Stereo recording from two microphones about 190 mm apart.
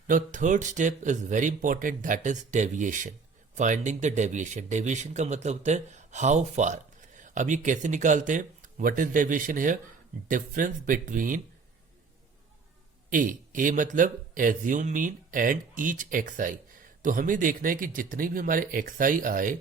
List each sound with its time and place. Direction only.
0.1 s speech: 40° right (ahead or behind)
13.1 s speech: 45° right (ahead or behind)